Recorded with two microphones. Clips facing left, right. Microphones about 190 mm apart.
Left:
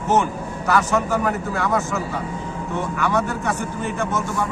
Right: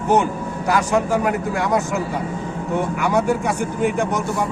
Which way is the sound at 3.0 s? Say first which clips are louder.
Right 2 dB; 10° right (ahead or behind).